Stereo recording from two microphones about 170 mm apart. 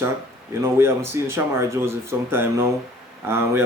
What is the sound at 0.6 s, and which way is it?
Speech, 15° right (ahead or behind).